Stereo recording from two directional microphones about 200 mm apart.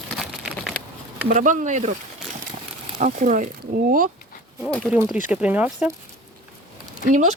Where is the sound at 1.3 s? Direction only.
40° right (ahead or behind).